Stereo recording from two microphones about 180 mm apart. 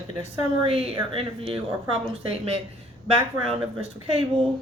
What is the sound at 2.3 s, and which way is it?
Speech, 35° right (ahead or behind).